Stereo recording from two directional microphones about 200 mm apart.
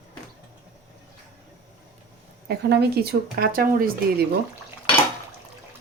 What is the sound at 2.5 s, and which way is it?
Speech, 55° right (ahead or behind).